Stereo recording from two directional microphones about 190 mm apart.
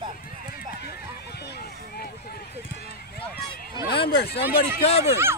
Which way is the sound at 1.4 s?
60° left (ahead or behind).